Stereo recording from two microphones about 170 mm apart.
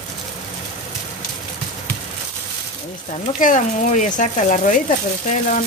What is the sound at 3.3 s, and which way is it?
Speech, 50° left (ahead or behind).